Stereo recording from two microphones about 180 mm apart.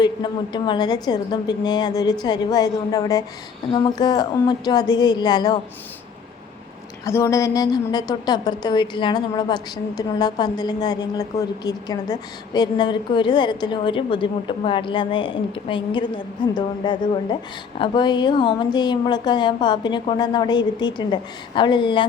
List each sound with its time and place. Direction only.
0.0 s a woman's voice: 25° left (ahead or behind)
7.0 s a woman's voice: 15° left (ahead or behind)